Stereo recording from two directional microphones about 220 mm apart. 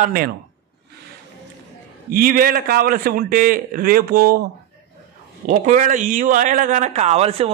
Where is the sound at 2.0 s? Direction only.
40° right (ahead or behind).